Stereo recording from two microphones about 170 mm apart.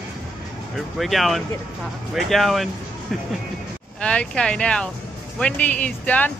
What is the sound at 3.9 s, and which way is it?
Speech, 5° left (ahead or behind).